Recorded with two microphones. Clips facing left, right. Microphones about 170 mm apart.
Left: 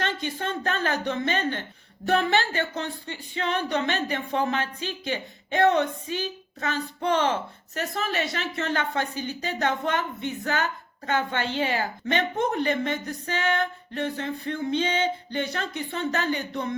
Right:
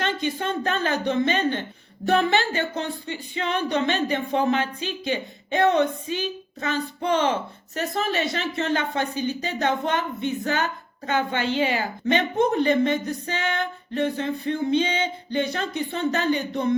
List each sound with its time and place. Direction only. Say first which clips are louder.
0.0 s a woman's voice: right 3 dB; 15° right (ahead or behind)